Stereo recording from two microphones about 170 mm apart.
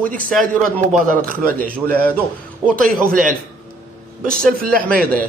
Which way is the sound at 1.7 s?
10° left (ahead or behind).